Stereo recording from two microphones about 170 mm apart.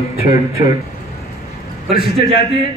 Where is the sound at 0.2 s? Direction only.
60° left (ahead or behind).